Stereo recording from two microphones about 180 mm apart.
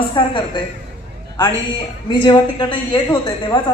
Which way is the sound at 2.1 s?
25° left (ahead or behind).